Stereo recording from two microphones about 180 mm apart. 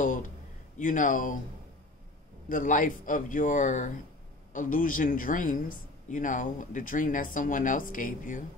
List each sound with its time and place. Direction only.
0.7 s speech: 45° left (ahead or behind)
2.5 s speech: 45° left (ahead or behind)